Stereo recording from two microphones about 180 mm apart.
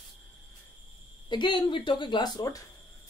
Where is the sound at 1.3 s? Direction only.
25° left (ahead or behind).